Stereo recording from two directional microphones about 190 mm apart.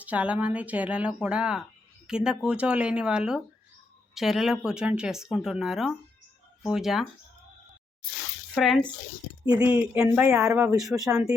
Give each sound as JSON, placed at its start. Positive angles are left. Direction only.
{"t": 0.0, "sound": "speech", "side_deg": -5}
{"t": 8.5, "sound": "speech", "side_deg": 0}
{"t": 10.8, "sound": "speech", "side_deg": 0}
{"t": 11.1, "sound": "speech", "side_deg": -15}